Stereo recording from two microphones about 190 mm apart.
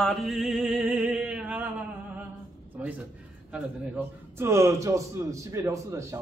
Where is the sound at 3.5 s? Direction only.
10° right (ahead or behind).